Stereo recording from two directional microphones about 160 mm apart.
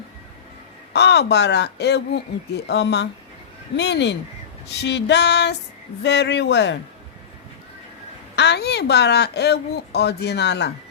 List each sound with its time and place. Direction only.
0.9 s a woman's voice: 90° left
8.4 s a woman's voice: 90° left